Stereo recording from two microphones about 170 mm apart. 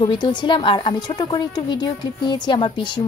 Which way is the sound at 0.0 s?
25° left (ahead or behind).